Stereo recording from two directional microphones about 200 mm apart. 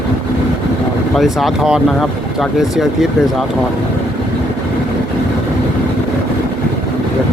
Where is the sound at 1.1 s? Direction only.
Centre (ahead or behind).